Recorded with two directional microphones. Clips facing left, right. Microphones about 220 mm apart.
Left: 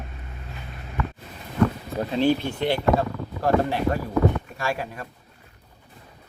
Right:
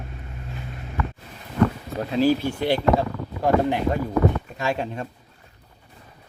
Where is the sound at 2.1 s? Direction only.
5° right (ahead or behind); by 5.1 s 25° right (ahead or behind).